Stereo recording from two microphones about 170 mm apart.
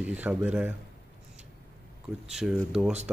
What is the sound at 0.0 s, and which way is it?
Speech, 5° right (ahead or behind).